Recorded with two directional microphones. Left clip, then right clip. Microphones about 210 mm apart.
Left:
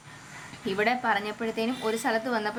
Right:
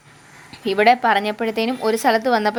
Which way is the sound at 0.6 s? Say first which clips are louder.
Right 11 dB; 40° right (ahead or behind).